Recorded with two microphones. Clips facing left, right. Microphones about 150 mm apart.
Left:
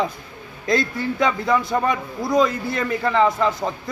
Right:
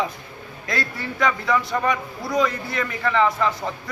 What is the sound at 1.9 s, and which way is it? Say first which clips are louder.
A man's voice: left 3 dB; 25° left (ahead or behind).